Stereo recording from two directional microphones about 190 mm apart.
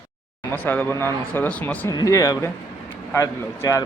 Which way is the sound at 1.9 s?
20° left (ahead or behind).